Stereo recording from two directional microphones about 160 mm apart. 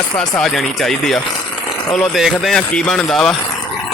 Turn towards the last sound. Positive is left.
turn(degrees=0)  # may be behind; listen again after turning